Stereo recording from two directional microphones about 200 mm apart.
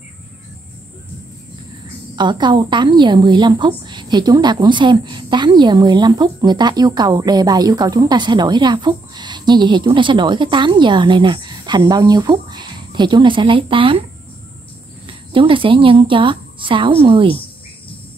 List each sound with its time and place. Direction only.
2.1 s a woman's voice: 25° right (ahead or behind)
15.0 s speech: 25° right (ahead or behind)